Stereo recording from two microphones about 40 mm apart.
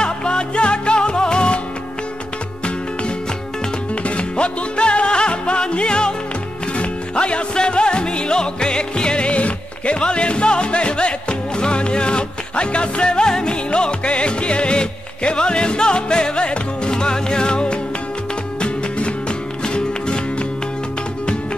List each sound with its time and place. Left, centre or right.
0.0 s music: left
3.9 s music: left